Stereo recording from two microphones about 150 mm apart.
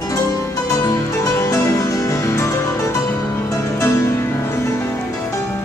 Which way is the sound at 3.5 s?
20° left (ahead or behind).